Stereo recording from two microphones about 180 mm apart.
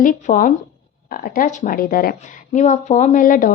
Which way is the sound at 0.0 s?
45° left (ahead or behind).